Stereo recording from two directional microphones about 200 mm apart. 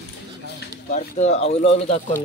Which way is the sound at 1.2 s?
35° left (ahead or behind).